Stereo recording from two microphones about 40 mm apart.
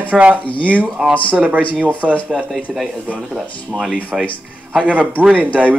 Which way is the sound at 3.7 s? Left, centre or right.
Right.